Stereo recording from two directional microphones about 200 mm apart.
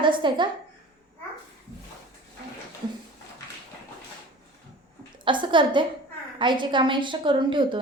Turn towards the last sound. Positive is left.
turn(degrees=-25)  # may be behind; listen again after turning